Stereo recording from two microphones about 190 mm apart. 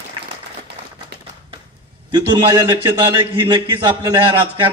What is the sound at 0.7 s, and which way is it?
Typewriter, 60° right (ahead or behind).